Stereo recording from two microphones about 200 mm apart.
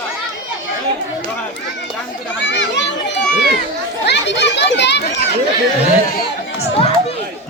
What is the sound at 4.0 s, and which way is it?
Children playing, 60° left (ahead or behind).